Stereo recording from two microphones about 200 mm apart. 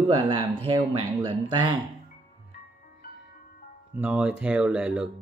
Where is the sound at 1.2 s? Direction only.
25° right (ahead or behind).